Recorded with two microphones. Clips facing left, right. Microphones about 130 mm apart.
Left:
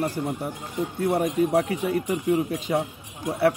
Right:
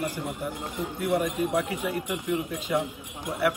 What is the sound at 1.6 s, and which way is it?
Speech, 35° left (ahead or behind).